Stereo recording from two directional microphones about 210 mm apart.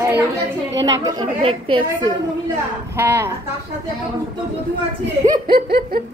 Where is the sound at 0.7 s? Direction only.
60° right (ahead or behind).